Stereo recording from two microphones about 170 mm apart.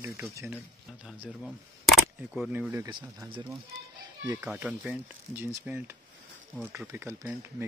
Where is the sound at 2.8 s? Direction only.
25° right (ahead or behind).